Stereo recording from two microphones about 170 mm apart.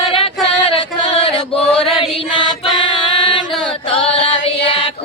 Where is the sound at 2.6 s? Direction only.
30° left (ahead or behind).